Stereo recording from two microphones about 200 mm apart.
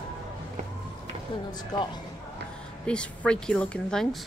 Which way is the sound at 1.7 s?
20° left (ahead or behind).